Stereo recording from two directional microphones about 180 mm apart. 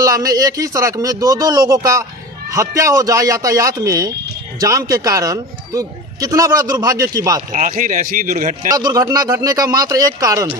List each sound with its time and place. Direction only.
0.0 s a man's voice: 20° right (ahead or behind)
7.5 s a man's voice: 45° right (ahead or behind)
8.6 s a man's voice: 20° right (ahead or behind)